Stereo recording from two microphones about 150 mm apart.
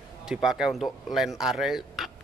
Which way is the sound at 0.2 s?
5° right (ahead or behind).